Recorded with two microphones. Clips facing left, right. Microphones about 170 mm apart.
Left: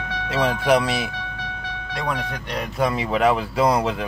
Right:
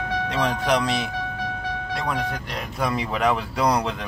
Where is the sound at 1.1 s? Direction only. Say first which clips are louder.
Right 4 dB; 45° right (ahead or behind).